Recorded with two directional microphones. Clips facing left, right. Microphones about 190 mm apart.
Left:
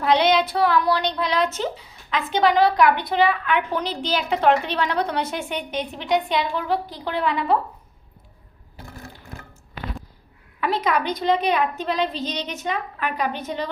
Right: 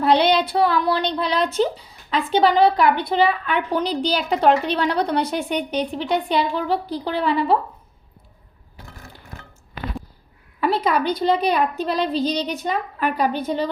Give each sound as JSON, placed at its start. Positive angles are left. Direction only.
{"t": 0.0, "sound": "speech", "side_deg": -30}
{"t": 10.6, "sound": "speech", "side_deg": -30}